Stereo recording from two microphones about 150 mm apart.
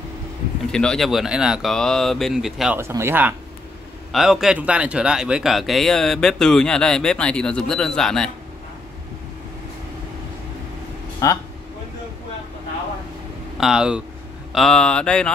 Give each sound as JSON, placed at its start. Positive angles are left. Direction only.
{"t": 0.7, "sound": "speech", "side_deg": 5}
{"t": 2.8, "sound": "speech", "side_deg": -15}
{"t": 4.1, "sound": "speech", "side_deg": 0}
{"t": 11.2, "sound": "speech", "side_deg": 20}
{"t": 13.6, "sound": "speech", "side_deg": -5}